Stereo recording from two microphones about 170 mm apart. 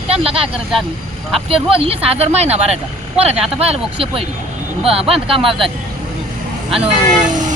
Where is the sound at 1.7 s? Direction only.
35° right (ahead or behind).